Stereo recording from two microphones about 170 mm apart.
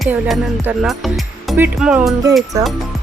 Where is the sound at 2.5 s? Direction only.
20° right (ahead or behind).